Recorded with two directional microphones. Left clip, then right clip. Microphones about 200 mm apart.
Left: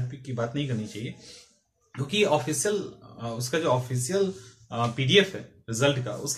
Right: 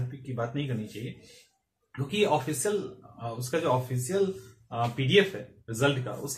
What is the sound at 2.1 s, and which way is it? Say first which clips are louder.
Speech: left 2 dB; 5° left (ahead or behind).